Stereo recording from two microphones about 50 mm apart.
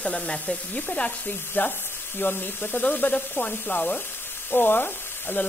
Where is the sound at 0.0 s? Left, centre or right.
Left.